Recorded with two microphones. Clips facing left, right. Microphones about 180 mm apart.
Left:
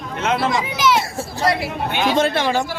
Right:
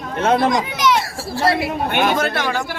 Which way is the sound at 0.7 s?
5° left (ahead or behind).